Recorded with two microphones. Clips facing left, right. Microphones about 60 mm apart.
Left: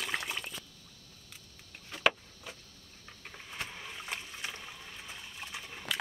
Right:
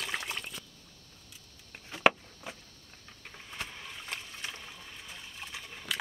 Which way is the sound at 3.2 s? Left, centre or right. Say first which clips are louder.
Even; centre.